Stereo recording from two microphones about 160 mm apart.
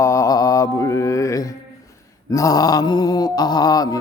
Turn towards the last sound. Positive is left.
turn(degrees=25)  # may be behind; listen again after turning